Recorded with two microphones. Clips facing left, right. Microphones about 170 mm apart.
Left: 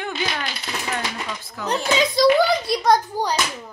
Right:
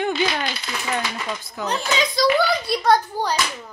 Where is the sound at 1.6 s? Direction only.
20° right (ahead or behind).